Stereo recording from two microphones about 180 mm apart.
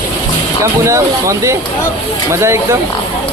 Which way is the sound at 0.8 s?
15° right (ahead or behind).